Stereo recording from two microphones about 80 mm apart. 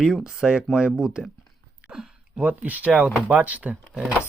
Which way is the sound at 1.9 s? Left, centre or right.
Centre.